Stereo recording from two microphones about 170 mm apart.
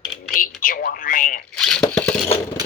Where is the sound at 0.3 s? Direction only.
55° left (ahead or behind).